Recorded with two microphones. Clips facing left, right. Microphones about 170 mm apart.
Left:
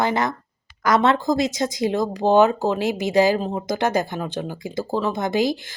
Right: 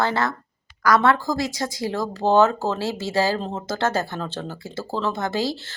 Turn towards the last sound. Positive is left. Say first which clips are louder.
# left 3 dB
turn(degrees=15)  # may be behind; listen again after turning